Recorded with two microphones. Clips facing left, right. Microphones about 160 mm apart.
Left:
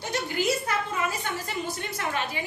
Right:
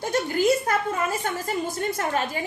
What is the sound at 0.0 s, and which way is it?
A woman's voice, 50° right (ahead or behind).